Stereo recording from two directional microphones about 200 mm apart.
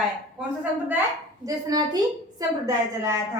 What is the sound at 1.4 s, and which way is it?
A woman's voice, 20° right (ahead or behind).